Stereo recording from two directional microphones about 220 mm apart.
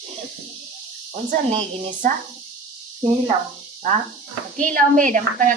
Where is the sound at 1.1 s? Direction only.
30° right (ahead or behind).